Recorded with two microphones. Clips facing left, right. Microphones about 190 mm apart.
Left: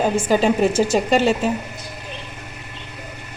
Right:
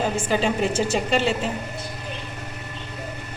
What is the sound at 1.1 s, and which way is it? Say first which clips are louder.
Speech: left 5 dB; 45° left (ahead or behind).